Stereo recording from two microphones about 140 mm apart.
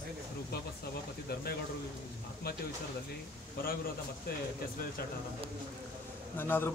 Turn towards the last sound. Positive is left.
turn(degrees=15)  # may be behind; listen again after turning